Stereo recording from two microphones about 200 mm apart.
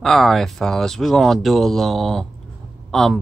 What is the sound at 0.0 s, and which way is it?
Speech, centre (ahead or behind).